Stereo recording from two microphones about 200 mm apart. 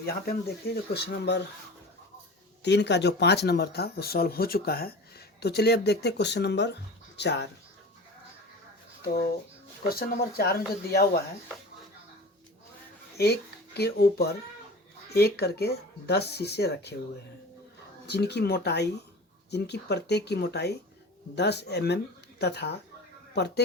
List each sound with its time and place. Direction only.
0.0 s speech: 50° left (ahead or behind)
2.6 s speech: 60° left (ahead or behind)
9.9 s speech: 50° left (ahead or behind)
13.7 s speech: 55° left (ahead or behind)
18.1 s speech: 55° left (ahead or behind)